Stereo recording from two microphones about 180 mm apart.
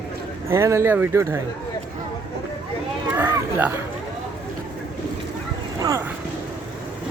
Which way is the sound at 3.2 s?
10° right (ahead or behind).